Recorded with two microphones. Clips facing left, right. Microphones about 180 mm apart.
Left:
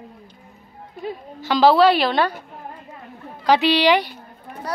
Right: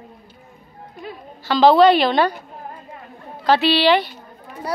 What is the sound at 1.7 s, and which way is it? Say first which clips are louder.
Speech: right 4 dB; 5° left (ahead or behind).